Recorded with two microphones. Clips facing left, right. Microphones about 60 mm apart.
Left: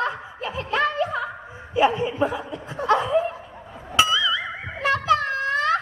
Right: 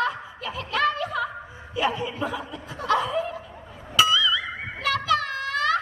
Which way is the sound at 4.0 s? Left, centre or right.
Left.